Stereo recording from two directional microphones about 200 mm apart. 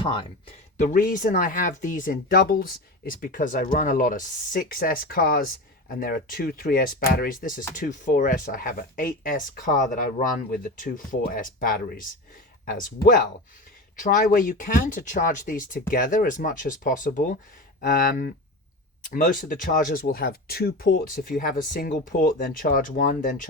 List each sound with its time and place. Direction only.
0.0 s speech: 25° left (ahead or behind); by 23.5 s 40° left (ahead or behind)